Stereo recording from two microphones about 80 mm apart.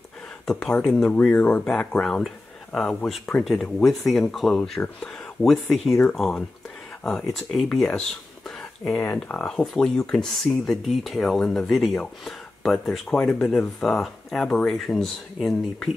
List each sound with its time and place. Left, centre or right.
0.5 s speech: centre
1.2 s speech: centre
1.6 s speech: centre
9.0 s speech: left
9.4 s speech: centre